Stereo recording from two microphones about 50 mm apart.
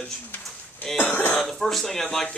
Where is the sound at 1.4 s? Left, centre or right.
Centre.